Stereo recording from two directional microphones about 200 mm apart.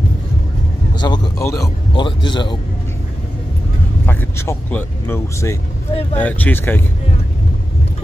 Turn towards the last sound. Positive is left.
turn(degrees=10)  # may be behind; listen again after turning